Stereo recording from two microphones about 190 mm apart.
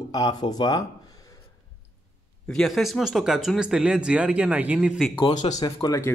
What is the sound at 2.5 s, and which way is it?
Speech, centre (ahead or behind).